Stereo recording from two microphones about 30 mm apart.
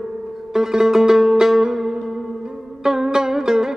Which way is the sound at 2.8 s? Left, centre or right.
Centre.